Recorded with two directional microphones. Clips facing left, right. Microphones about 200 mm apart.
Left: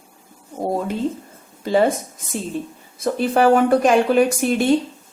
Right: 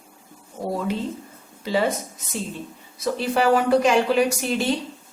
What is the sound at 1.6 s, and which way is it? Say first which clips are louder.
Speech: left 5 dB; 50° left (ahead or behind).